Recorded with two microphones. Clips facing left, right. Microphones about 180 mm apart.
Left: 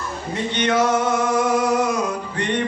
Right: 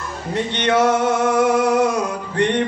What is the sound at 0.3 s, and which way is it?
Male singing, 60° right (ahead or behind).